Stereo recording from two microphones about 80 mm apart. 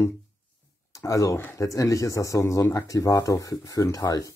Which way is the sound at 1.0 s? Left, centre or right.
Left.